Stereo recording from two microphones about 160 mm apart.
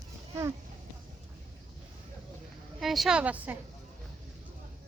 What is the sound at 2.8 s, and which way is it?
Speech, centre (ahead or behind).